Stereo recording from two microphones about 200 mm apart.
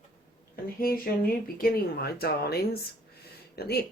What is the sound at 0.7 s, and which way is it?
Speech, 45° left (ahead or behind).